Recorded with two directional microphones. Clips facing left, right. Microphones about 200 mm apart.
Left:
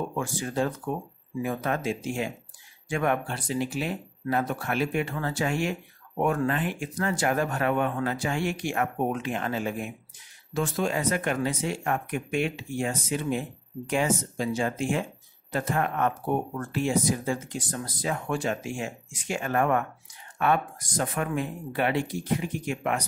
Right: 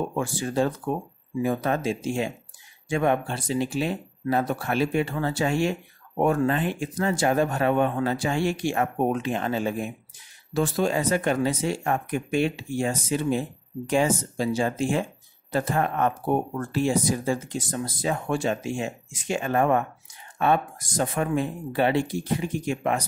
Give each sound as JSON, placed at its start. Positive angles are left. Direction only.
{"t": 0.1, "sound": "speech", "side_deg": -30}